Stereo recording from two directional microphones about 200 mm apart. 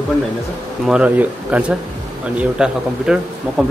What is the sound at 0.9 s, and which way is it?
Speech, 5° right (ahead or behind).